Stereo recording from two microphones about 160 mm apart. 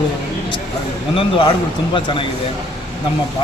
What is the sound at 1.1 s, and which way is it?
A man's voice, 35° left (ahead or behind).